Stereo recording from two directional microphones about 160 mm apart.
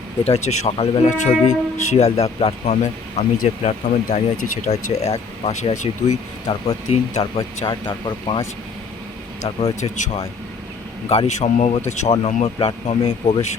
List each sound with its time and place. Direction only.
0.3 s speech: 40° left (ahead or behind)
7.6 s speech: 35° left (ahead or behind)
9.6 s speech: 40° left (ahead or behind)
11.1 s speech: 40° left (ahead or behind)